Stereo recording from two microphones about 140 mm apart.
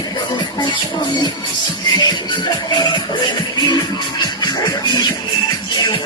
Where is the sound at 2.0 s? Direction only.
35° left (ahead or behind).